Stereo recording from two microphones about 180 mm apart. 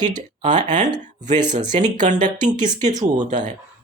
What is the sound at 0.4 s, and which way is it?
Speech, 45° right (ahead or behind).